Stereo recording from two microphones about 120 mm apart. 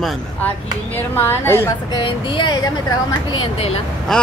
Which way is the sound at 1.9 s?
45° left (ahead or behind).